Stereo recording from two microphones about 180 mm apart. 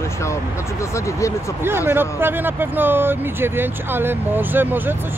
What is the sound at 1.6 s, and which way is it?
Speech, 10° right (ahead or behind).